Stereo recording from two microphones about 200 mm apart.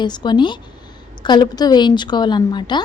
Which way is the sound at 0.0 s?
20° left (ahead or behind).